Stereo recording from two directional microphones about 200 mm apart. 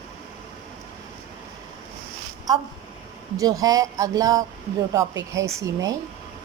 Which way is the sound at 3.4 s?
15° right (ahead or behind).